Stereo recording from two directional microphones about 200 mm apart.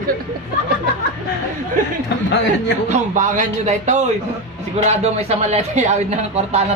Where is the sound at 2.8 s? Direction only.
40° right (ahead or behind).